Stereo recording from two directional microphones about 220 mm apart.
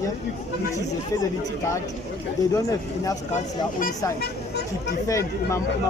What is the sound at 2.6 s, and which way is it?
Speech, 15° left (ahead or behind).